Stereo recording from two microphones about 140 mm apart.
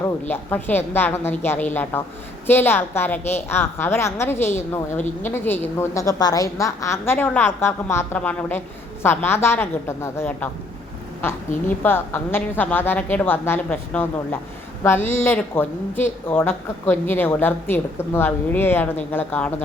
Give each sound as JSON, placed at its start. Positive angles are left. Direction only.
{"t": 0.0, "sound": "a woman's voice", "side_deg": 15}